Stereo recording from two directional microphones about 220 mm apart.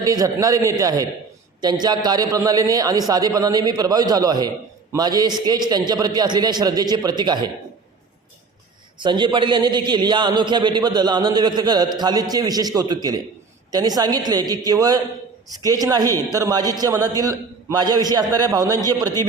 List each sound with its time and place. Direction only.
0.0 s a man's voice: 15° right (ahead or behind)
9.0 s a man's voice: 20° right (ahead or behind)